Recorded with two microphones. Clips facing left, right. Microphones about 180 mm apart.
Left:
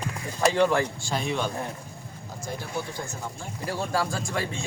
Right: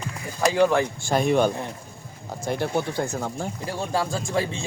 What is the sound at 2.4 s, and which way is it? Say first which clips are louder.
Speech: right 8 dB; 70° right (ahead or behind).